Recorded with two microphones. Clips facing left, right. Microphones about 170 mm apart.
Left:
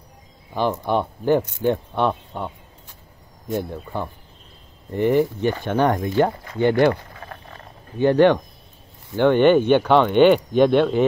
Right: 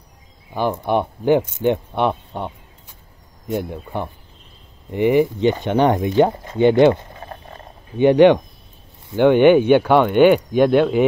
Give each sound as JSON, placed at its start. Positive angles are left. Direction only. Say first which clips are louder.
{"t": 0.6, "sound": "speech", "louder": "right 2 dB", "side_deg": -15}
{"t": 3.7, "sound": "speech", "louder": "right 2 dB", "side_deg": -20}